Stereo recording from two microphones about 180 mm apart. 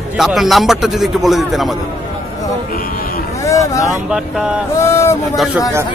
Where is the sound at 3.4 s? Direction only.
15° left (ahead or behind).